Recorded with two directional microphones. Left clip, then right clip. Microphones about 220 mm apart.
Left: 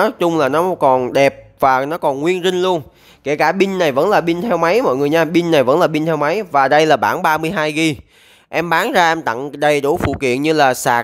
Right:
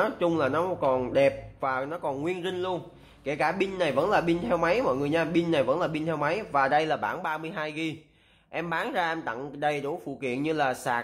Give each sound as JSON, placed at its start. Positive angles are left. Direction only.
{"t": 0.0, "sound": "speech", "side_deg": 50}